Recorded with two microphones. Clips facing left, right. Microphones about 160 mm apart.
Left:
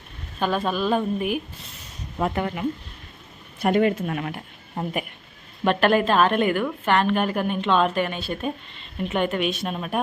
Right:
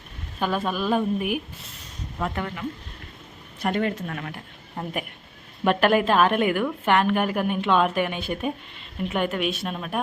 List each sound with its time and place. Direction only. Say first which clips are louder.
0.3 s a woman's voice: left 2 dB; 10° right (ahead or behind)
2.1 s speech: left 4 dB; 20° left (ahead or behind)
5.6 s a woman's voice: even; 10° right (ahead or behind)